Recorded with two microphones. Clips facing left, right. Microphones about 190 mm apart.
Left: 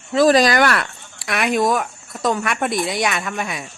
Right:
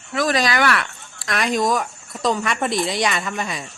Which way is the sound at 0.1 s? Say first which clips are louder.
Left 7 dB; 30° left (ahead or behind).